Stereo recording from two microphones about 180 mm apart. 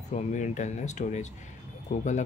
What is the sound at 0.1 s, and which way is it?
Speech, 40° left (ahead or behind).